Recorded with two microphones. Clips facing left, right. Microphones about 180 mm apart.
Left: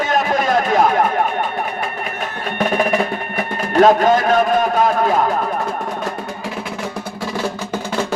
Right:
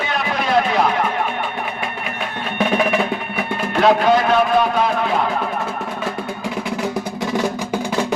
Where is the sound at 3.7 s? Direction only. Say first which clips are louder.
Left 3 dB; 45° left (ahead or behind).